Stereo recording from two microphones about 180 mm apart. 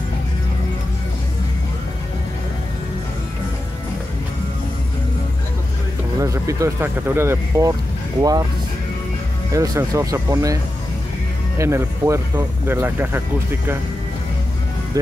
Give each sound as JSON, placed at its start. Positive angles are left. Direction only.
{"t": 6.1, "sound": "speech", "side_deg": -15}
{"t": 9.5, "sound": "speech", "side_deg": -15}